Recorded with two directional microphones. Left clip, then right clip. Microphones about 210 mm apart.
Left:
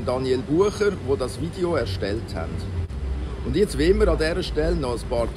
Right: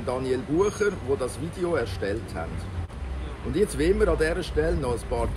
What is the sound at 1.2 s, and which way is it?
Speech, 15° right (ahead or behind).